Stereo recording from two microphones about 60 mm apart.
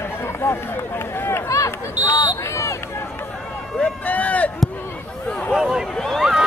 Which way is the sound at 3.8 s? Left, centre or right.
Left.